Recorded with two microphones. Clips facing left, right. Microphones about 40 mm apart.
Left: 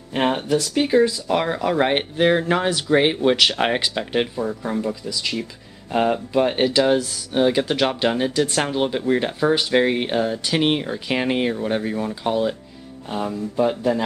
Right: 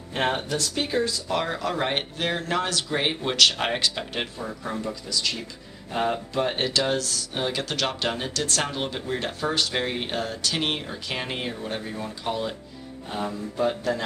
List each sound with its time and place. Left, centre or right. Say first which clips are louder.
0.1 s speech: left 6 dB; centre